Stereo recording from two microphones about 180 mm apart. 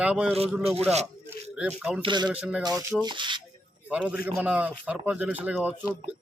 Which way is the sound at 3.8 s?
5° right (ahead or behind).